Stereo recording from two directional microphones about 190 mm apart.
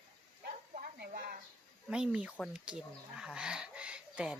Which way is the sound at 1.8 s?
5° right (ahead or behind).